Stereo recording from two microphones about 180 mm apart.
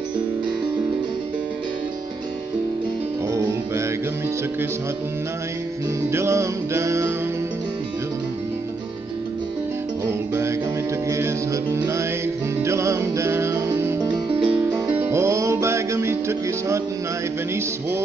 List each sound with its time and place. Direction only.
6.1 s music: 15° right (ahead or behind)
11.1 s music: 15° right (ahead or behind)
14.0 s music: 25° right (ahead or behind)
14.5 s music: 15° right (ahead or behind)